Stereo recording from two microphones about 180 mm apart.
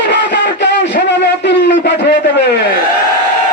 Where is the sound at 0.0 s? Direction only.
75° left (ahead or behind).